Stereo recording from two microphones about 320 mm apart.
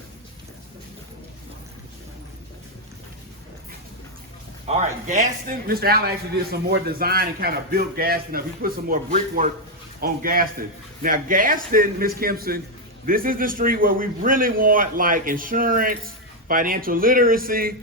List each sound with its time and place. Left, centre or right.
4.6 s a man's voice: centre